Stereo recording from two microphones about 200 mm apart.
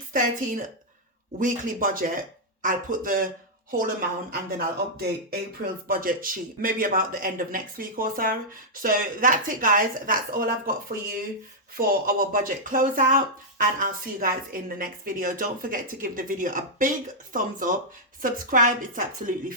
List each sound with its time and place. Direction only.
1.4 s a man's voice: 45° right (ahead or behind)